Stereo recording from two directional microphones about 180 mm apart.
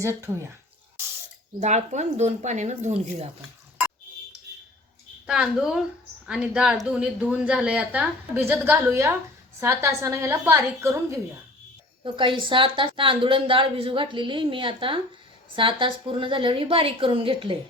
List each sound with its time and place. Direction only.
0.0 s a woman's voice: 15° right (ahead or behind)
1.6 s speech: 40° right (ahead or behind)
5.2 s a woman's voice: 5° right (ahead or behind)
12.0 s a woman's voice: 25° right (ahead or behind)